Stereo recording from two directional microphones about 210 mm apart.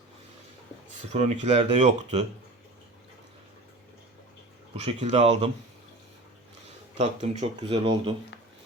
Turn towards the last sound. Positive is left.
turn(degrees=-25)  # may be behind; listen again after turning